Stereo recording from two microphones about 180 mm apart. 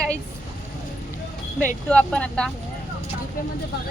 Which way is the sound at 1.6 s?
5° left (ahead or behind).